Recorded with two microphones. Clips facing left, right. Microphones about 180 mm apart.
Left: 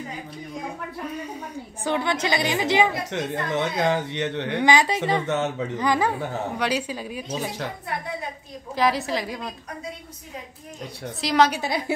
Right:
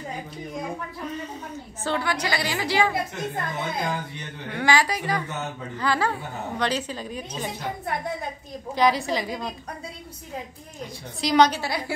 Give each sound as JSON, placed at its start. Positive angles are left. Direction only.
{"t": 1.9, "sound": "a woman's voice", "side_deg": 20}
{"t": 3.1, "sound": "speech", "side_deg": 85}
{"t": 4.6, "sound": "a woman's voice", "side_deg": 20}
{"t": 5.3, "sound": "speech", "side_deg": 80}
{"t": 5.8, "sound": "a woman's voice", "side_deg": 15}
{"t": 8.7, "sound": "a woman's voice", "side_deg": 0}
{"t": 11.1, "sound": "a woman's voice", "side_deg": 0}